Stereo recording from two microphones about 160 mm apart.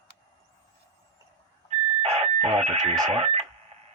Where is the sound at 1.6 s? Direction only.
40° right (ahead or behind).